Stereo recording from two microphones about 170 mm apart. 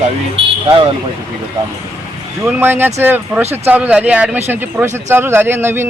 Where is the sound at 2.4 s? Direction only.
10° right (ahead or behind).